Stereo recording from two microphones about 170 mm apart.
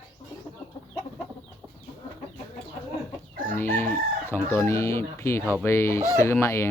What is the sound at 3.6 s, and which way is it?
Chicken, 15° left (ahead or behind).